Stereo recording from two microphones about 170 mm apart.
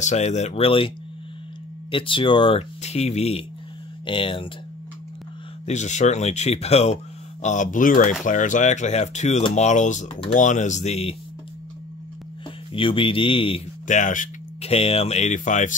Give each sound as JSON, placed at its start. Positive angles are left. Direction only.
{"t": 0.0, "sound": "speech", "side_deg": 40}
{"t": 5.7, "sound": "speech", "side_deg": 45}
{"t": 12.7, "sound": "speech", "side_deg": 30}
{"t": 13.8, "sound": "speech", "side_deg": 45}